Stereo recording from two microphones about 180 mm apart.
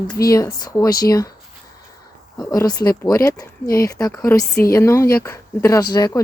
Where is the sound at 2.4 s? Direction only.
20° left (ahead or behind).